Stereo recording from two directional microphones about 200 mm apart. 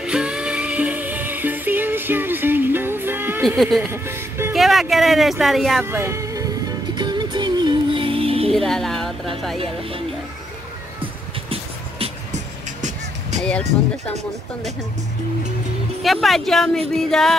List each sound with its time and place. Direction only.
0.0 s music: 5° right (ahead or behind)
3.4 s speech: centre (ahead or behind)
3.8 s music: 10° right (ahead or behind)
4.6 s speech: centre (ahead or behind)
5.9 s music: 15° right (ahead or behind); by 8.5 s 30° right (ahead or behind)
8.5 s music: centre (ahead or behind)
9.6 s speech: 25° right (ahead or behind)
11.0 s music: 30° right (ahead or behind)
13.4 s speech: 5° left (ahead or behind)
16.0 s speech: centre (ahead or behind)